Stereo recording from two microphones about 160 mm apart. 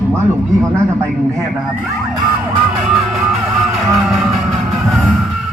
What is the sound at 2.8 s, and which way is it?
Music, centre (ahead or behind).